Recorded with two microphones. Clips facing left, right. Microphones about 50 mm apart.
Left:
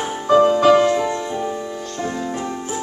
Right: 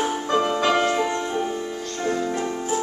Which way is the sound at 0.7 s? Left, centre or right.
Centre.